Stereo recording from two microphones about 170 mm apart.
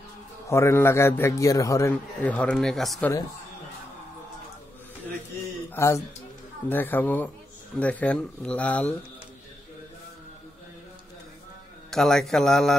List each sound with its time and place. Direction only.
0.5 s a man's voice: 15° left (ahead or behind)
5.8 s a man's voice: 20° left (ahead or behind)
11.9 s a man's voice: centre (ahead or behind)